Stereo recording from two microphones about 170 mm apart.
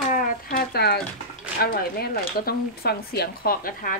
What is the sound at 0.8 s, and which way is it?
Speech, 70° left (ahead or behind).